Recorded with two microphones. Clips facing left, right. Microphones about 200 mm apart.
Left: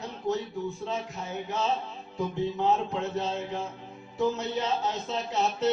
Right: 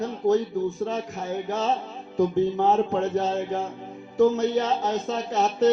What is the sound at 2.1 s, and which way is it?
Speech, 55° right (ahead or behind).